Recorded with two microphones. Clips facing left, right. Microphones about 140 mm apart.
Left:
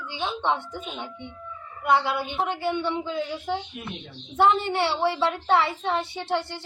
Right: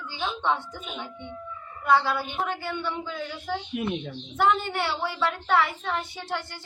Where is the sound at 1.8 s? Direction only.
20° left (ahead or behind).